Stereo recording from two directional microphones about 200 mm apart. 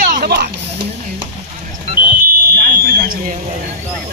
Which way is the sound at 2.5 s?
50° right (ahead or behind).